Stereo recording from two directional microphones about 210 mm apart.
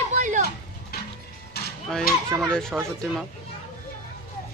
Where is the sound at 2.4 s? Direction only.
5° left (ahead or behind).